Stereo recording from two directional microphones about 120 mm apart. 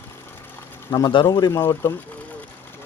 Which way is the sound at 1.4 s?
20° left (ahead or behind).